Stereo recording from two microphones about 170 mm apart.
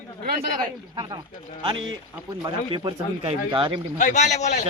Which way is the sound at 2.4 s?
30° right (ahead or behind).